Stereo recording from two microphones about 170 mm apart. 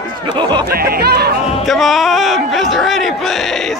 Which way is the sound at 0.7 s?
60° right (ahead or behind).